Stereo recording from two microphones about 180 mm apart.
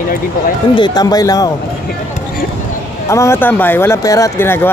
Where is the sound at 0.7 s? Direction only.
25° left (ahead or behind).